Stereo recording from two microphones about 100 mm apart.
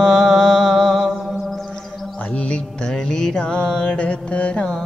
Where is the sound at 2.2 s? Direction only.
15° left (ahead or behind).